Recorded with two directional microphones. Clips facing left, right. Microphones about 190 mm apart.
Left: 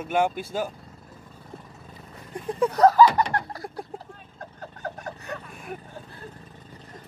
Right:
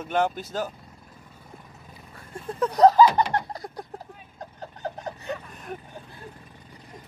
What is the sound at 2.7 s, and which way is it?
Laughter, 15° right (ahead or behind).